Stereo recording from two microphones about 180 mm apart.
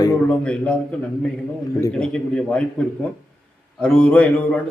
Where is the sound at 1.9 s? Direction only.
5° left (ahead or behind).